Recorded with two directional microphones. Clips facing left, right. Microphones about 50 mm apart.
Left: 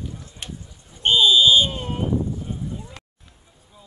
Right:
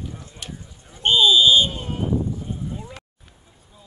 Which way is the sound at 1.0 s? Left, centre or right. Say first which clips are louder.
Even; centre.